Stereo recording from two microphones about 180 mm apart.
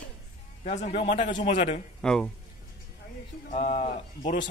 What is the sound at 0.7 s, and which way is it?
Speech, 40° left (ahead or behind).